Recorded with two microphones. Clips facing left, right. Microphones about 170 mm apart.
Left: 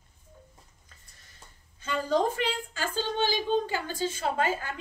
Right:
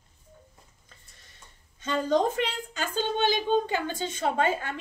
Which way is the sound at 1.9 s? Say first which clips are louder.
Right 2 dB; 20° right (ahead or behind).